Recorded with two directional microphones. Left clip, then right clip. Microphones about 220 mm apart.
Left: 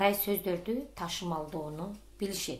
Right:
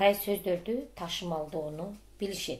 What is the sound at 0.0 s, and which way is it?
Speech, 20° left (ahead or behind).